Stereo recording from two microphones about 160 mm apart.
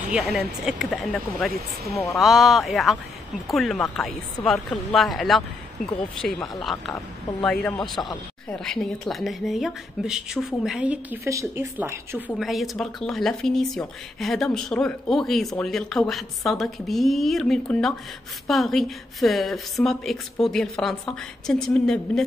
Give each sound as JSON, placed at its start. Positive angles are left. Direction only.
{"t": 0.1, "sound": "a woman's voice", "side_deg": -5}
{"t": 6.6, "sound": "a woman's voice", "side_deg": 0}
{"t": 11.2, "sound": "speech", "side_deg": -20}
{"t": 12.3, "sound": "a woman's voice", "side_deg": 0}